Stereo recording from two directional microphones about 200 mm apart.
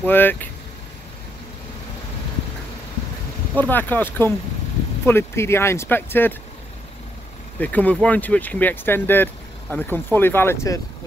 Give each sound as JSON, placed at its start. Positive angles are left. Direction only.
{"t": 0.0, "sound": "speech", "side_deg": 10}
{"t": 3.5, "sound": "speech", "side_deg": 10}
{"t": 7.6, "sound": "speech", "side_deg": 5}